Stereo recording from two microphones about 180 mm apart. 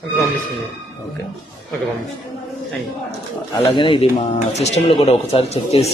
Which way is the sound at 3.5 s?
30° left (ahead or behind).